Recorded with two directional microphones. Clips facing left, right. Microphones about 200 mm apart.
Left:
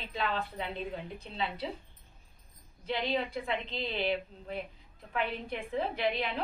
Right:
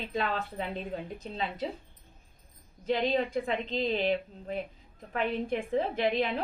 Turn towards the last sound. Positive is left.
turn(degrees=-45)  # may be behind; listen again after turning